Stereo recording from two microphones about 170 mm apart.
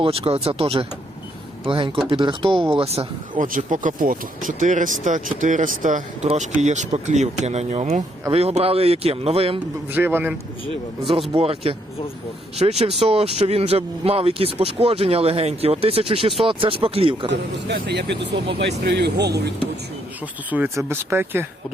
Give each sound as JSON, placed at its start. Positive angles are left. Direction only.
{"t": 0.0, "sound": "speech", "side_deg": -35}
{"t": 3.3, "sound": "speech", "side_deg": -50}
{"t": 9.9, "sound": "speech", "side_deg": -10}
{"t": 11.3, "sound": "speech", "side_deg": -35}
{"t": 17.3, "sound": "speech", "side_deg": -80}
{"t": 18.6, "sound": "speech", "side_deg": -75}
{"t": 20.5, "sound": "speech", "side_deg": -10}